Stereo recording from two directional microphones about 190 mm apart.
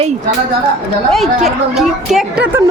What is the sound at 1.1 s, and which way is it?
Speech, centre (ahead or behind).